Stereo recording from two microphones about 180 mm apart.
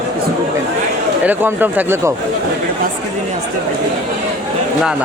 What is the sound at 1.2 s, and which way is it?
Speech, 10° right (ahead or behind).